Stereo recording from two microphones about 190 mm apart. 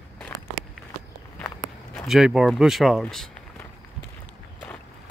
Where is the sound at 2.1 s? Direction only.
Centre (ahead or behind).